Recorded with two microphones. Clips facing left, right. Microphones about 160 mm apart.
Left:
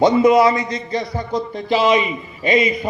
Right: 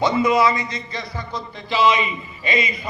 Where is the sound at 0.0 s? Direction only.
50° left (ahead or behind).